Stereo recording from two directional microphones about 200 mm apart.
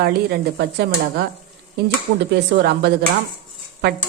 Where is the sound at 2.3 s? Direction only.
55° right (ahead or behind).